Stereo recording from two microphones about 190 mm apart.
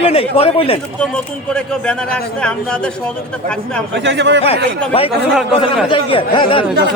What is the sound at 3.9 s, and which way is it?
Speech, 65° right (ahead or behind).